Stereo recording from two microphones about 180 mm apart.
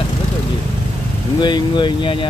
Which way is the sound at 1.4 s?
25° left (ahead or behind).